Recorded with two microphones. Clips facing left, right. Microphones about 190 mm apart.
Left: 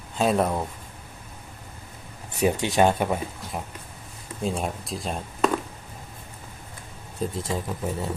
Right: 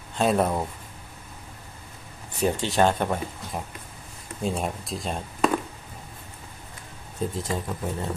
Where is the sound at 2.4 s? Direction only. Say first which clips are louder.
Left 1 dB; 10° left (ahead or behind).